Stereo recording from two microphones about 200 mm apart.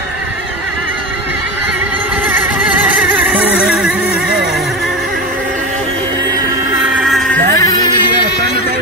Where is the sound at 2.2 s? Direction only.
10° right (ahead or behind).